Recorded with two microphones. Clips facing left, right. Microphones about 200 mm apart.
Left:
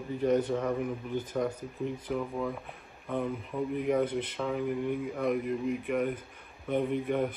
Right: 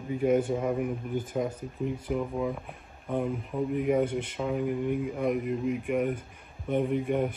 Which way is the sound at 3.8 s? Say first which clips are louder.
Right 2 dB; 10° right (ahead or behind).